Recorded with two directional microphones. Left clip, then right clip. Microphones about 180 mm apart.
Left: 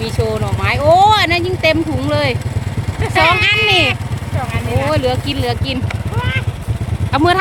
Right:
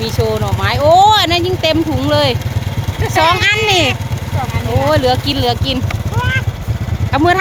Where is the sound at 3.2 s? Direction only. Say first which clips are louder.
Even; 35° right (ahead or behind).